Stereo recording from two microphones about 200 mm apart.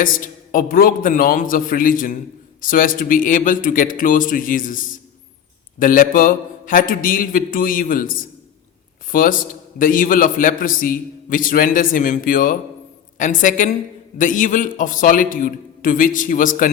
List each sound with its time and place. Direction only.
0.5 s a man's voice: 45° left (ahead or behind)
5.8 s a man's voice: 45° left (ahead or behind)
9.1 s a man's voice: 45° left (ahead or behind)